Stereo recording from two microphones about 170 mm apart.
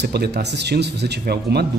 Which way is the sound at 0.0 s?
75° right (ahead or behind).